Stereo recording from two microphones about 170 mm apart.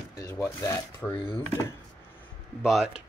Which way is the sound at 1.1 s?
30° left (ahead or behind).